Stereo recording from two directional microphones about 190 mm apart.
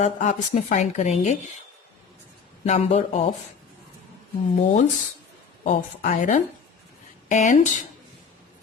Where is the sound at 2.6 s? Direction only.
35° left (ahead or behind).